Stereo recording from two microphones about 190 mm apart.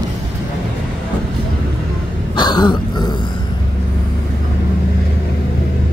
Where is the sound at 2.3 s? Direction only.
20° left (ahead or behind).